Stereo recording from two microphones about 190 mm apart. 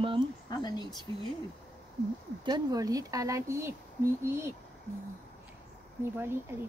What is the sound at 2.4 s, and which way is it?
Speech, 20° right (ahead or behind).